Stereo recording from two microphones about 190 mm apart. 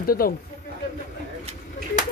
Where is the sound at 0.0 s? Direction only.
50° left (ahead or behind).